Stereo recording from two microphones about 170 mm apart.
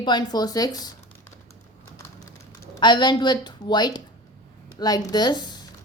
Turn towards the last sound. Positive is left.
turn(degrees=25)  # may be behind; listen again after turning